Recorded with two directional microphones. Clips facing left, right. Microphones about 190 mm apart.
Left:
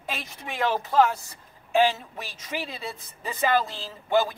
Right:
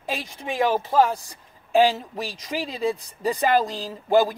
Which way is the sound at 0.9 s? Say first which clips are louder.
Right 1 dB; 35° right (ahead or behind).